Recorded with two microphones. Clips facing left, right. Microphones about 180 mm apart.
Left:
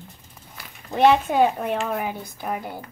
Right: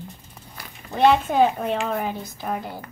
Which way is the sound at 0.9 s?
15° left (ahead or behind).